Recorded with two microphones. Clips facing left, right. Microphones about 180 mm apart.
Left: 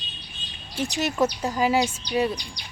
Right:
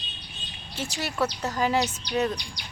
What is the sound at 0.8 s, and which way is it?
Speech, 20° left (ahead or behind).